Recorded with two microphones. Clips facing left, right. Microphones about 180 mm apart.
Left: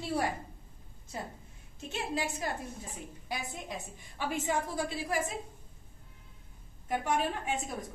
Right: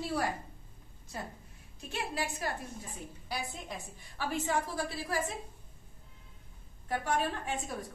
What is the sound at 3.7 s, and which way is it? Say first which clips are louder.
A woman's voice: left 2 dB; 20° left (ahead or behind).